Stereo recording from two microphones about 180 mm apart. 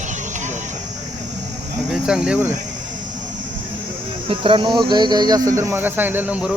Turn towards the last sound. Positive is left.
turn(degrees=-5)  # may be behind; listen again after turning